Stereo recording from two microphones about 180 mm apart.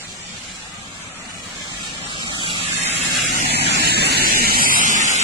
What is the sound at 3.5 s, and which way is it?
Vehicle, 65° right (ahead or behind).